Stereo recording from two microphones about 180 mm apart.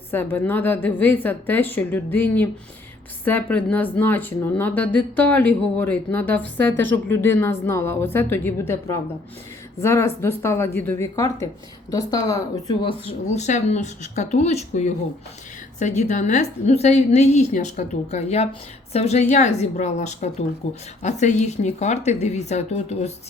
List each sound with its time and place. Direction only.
0.1 s speech: 10° left (ahead or behind)
9.8 s speech: 15° left (ahead or behind); by 23.3 s 35° left (ahead or behind)